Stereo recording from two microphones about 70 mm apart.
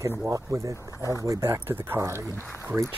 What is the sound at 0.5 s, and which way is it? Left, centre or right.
Speech, right.